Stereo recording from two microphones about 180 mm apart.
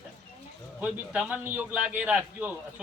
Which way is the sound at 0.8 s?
5° right (ahead or behind).